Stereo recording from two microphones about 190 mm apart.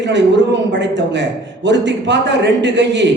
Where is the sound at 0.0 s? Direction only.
65° right (ahead or behind).